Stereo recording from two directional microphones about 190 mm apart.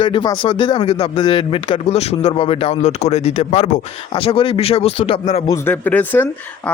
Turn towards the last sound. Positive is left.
turn(degrees=10)  # may be behind; listen again after turning